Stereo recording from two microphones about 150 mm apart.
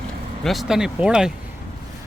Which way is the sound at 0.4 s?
Centre (ahead or behind).